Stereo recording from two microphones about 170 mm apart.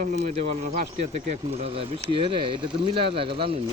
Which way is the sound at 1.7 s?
35° right (ahead or behind).